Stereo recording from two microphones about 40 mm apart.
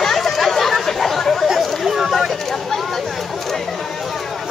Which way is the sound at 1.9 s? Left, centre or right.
Centre.